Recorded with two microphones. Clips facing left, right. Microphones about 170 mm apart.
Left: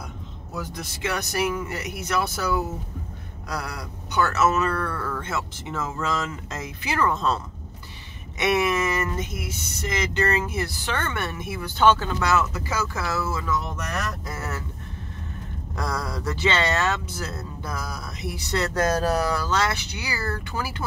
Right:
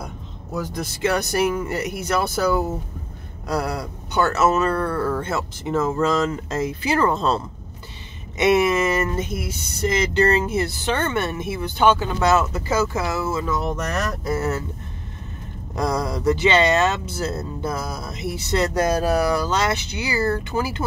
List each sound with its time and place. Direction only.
0.6 s speech: 45° right (ahead or behind); by 11.7 s 25° right (ahead or behind)
11.8 s speech: 15° right (ahead or behind)
12.2 s speech: 25° right (ahead or behind)
13.7 s speech: 40° right (ahead or behind)
15.7 s speech: 20° right (ahead or behind)